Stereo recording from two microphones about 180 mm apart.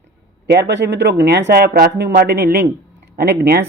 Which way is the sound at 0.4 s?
65° right (ahead or behind).